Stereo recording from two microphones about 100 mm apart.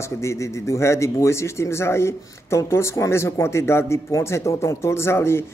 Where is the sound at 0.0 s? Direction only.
30° left (ahead or behind).